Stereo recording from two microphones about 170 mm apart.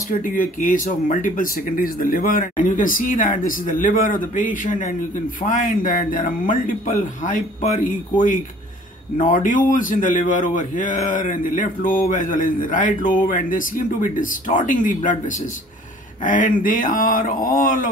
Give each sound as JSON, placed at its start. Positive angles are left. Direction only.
{"t": 0.2, "sound": "a man's voice", "side_deg": 55}